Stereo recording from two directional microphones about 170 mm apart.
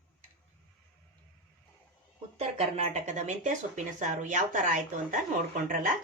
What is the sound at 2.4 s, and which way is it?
Speech, 40° right (ahead or behind).